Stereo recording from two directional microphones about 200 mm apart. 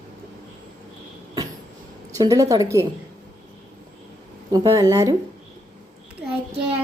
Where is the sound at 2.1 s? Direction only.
15° right (ahead or behind).